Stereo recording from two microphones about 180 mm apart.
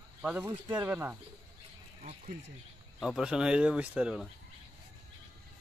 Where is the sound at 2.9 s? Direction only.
5° right (ahead or behind).